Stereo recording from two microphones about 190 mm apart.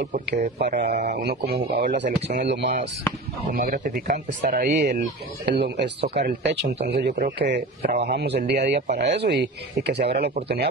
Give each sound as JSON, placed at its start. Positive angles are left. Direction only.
{"t": 0.6, "sound": "speech", "side_deg": -60}
{"t": 3.4, "sound": "speech", "side_deg": -45}